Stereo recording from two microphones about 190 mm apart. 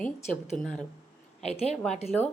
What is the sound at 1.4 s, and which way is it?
Speech, 35° left (ahead or behind).